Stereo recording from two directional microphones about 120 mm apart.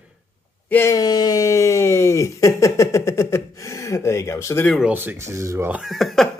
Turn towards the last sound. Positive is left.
turn(degrees=0)  # may be behind; listen again after turning